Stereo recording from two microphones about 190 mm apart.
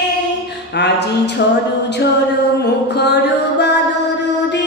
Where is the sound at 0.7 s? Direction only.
60° left (ahead or behind).